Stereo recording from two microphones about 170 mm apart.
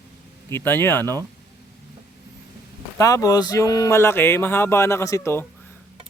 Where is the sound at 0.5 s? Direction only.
15° left (ahead or behind).